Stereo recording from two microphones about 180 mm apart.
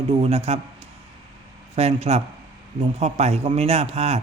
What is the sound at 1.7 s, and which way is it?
A man's voice, 35° right (ahead or behind).